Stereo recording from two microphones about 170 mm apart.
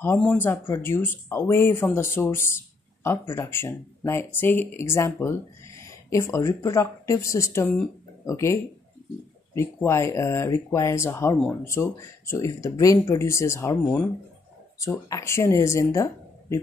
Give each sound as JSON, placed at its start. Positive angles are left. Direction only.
{"t": 0.0, "sound": "speech", "side_deg": 10}
{"t": 9.6, "sound": "speech", "side_deg": 15}